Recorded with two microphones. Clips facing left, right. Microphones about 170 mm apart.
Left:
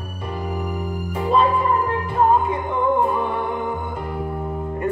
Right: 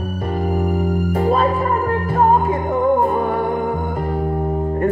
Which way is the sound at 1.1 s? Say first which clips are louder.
Even; 45° right (ahead or behind).